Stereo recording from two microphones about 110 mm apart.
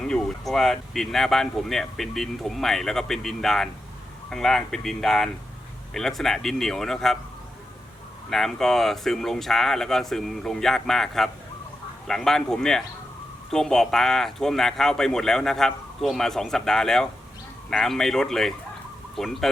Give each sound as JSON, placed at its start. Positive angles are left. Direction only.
{"t": 0.0, "sound": "speech", "side_deg": 5}
{"t": 8.3, "sound": "speech", "side_deg": 5}